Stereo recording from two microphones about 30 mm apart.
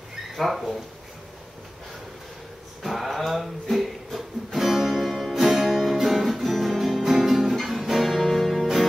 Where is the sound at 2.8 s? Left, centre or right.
Centre.